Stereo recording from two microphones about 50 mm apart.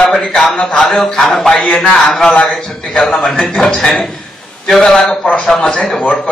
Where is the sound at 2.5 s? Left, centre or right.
Centre.